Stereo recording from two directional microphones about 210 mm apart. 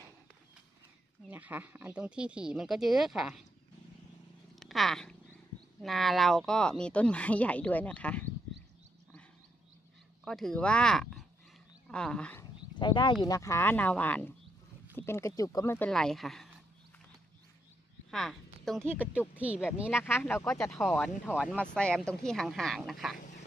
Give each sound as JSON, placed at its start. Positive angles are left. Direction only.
{"t": 1.3, "sound": "speech", "side_deg": -10}
{"t": 4.6, "sound": "speech", "side_deg": 0}
{"t": 10.2, "sound": "speech", "side_deg": 0}
{"t": 12.7, "sound": "speech", "side_deg": 20}
{"t": 18.1, "sound": "a woman's voice", "side_deg": 0}
{"t": 19.9, "sound": "speech", "side_deg": 10}
{"t": 23.1, "sound": "duck", "side_deg": 35}